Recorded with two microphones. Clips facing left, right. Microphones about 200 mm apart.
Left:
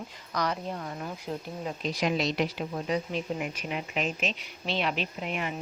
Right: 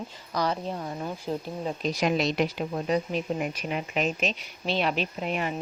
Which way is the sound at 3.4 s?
45° right (ahead or behind).